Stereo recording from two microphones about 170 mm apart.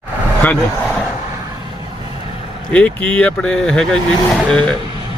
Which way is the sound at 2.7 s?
10° left (ahead or behind).